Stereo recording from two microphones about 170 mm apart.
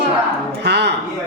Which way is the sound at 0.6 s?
80° right.